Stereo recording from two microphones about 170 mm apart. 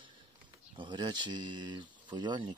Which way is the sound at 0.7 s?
25° right (ahead or behind).